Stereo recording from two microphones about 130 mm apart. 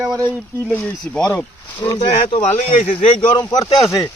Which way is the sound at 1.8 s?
25° left (ahead or behind).